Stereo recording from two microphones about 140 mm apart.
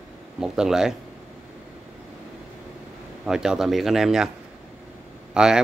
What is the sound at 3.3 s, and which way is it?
Speech, 5° right (ahead or behind).